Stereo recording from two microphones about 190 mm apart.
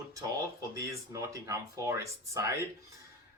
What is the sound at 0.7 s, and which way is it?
Speech, 15° right (ahead or behind).